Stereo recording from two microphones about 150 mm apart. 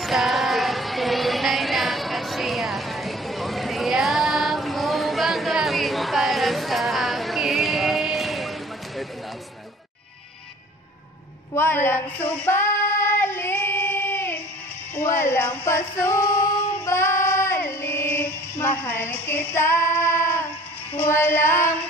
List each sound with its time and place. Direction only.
0.0 s a sound: centre (ahead or behind)
11.5 s female singing: 15° left (ahead or behind)
21.0 s child singing: 15° left (ahead or behind)